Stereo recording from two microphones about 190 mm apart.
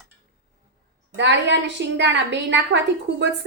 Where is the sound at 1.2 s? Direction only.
70° right (ahead or behind).